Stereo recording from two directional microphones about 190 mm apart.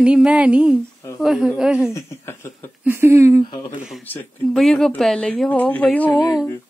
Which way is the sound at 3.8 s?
Centre (ahead or behind).